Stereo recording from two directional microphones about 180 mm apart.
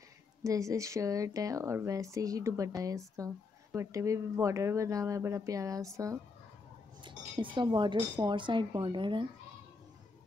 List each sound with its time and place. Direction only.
0.4 s speech: 15° right (ahead or behind)